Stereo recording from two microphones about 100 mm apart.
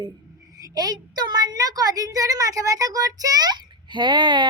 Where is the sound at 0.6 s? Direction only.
40° right (ahead or behind).